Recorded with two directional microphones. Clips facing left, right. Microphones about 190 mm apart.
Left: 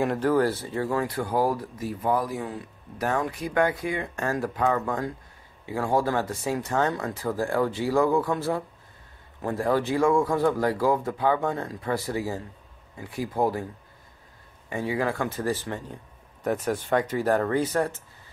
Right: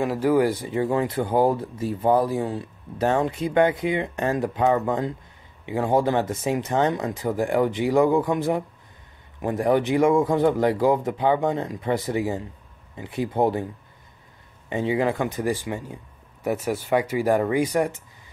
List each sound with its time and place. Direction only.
0.0 s speech: 5° right (ahead or behind); by 13.7 s 25° right (ahead or behind)
14.7 s speech: 20° right (ahead or behind)